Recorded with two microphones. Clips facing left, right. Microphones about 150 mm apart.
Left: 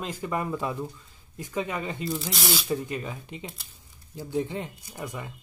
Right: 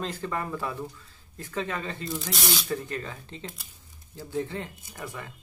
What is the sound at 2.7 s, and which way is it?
Speech, 15° left (ahead or behind).